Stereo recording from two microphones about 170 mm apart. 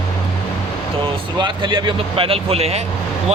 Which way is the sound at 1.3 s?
25° right (ahead or behind).